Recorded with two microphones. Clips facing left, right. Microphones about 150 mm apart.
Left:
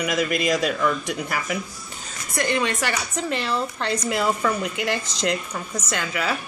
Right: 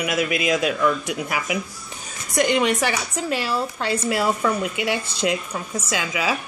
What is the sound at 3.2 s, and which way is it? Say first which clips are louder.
A woman's voice: right 1 dB; 5° right (ahead or behind).